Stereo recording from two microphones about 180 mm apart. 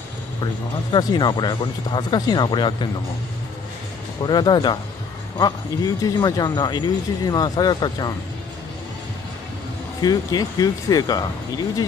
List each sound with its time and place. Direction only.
0.9 s speech: 25° left (ahead or behind)
4.2 s speech: 25° left (ahead or behind)
10.0 s speech: 20° left (ahead or behind)